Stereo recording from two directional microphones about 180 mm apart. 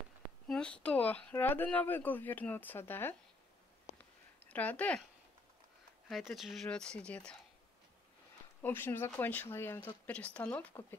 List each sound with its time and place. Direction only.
0.5 s speech: 5° left (ahead or behind)
3.8 s a sound: 10° left (ahead or behind)
6.0 s speech: centre (ahead or behind)
8.6 s speech: 10° left (ahead or behind)